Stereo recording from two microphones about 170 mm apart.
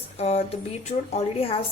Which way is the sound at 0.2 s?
35° left (ahead or behind).